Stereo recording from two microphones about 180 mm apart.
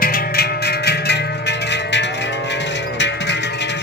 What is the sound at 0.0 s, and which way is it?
Music, 55° left (ahead or behind).